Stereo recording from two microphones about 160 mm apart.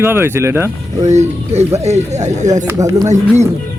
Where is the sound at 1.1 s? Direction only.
45° right (ahead or behind).